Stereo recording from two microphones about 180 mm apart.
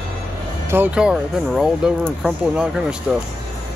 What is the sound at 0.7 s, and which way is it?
Speech, 10° right (ahead or behind).